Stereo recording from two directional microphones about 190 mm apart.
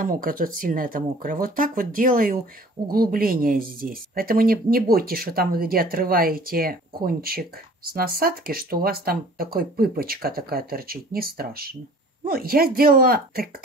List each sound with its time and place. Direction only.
0.0 s speech: 50° right (ahead or behind)